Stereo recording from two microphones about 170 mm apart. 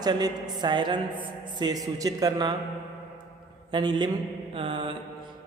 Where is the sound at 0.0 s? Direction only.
25° right (ahead or behind).